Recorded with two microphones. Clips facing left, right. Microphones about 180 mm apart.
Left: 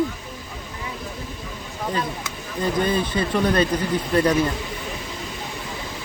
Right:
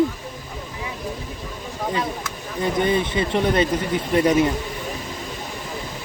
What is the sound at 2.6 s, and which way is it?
Speech, 20° right (ahead or behind).